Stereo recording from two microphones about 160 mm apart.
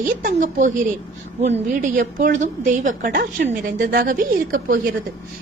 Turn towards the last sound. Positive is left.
turn(degrees=-60)  # may be behind; listen again after turning